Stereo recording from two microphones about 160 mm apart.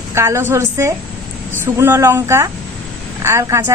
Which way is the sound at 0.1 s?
15° right (ahead or behind).